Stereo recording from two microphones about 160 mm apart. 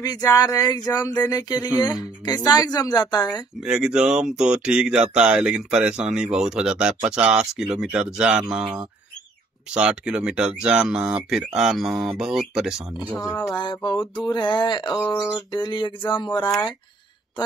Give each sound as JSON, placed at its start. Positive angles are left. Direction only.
{"t": 0.0, "sound": "speech", "side_deg": 20}
{"t": 3.6, "sound": "speech", "side_deg": -5}
{"t": 9.8, "sound": "speech", "side_deg": -5}
{"t": 13.2, "sound": "speech", "side_deg": 30}